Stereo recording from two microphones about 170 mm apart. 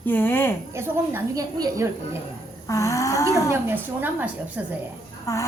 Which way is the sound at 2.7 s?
20° left (ahead or behind).